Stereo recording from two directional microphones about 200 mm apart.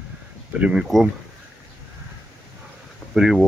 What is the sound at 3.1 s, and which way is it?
Speech, centre (ahead or behind).